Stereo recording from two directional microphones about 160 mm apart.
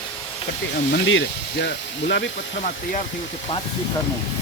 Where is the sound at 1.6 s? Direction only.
90° left.